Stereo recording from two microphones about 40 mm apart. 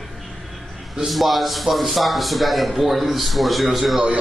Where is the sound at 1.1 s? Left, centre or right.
Centre.